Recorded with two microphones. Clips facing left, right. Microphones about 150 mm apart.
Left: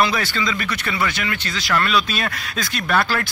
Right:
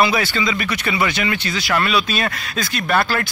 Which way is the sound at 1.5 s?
10° right (ahead or behind).